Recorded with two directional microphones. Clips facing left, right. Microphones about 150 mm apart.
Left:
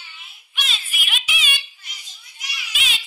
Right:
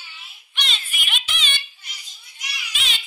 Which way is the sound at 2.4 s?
Centre (ahead or behind).